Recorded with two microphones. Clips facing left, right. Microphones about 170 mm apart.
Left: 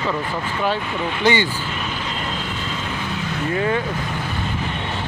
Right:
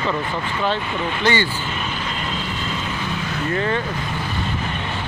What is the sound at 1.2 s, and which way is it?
Speech, 15° left (ahead or behind).